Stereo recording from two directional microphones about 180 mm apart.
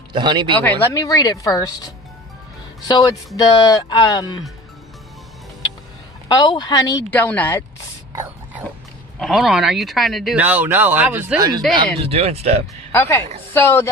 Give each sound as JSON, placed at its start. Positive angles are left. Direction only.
{"t": 0.1, "sound": "speech", "side_deg": -25}
{"t": 0.6, "sound": "speech", "side_deg": 10}
{"t": 6.2, "sound": "speech", "side_deg": 25}
{"t": 8.1, "sound": "a sound", "side_deg": -15}
{"t": 9.2, "sound": "speech", "side_deg": 0}
{"t": 11.3, "sound": "speech", "side_deg": -20}
{"t": 12.0, "sound": "speech", "side_deg": -35}
{"t": 12.9, "sound": "a woman's voice", "side_deg": 15}